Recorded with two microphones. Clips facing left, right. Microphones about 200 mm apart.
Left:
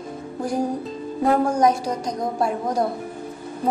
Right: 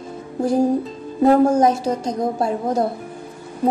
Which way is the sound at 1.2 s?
25° right (ahead or behind).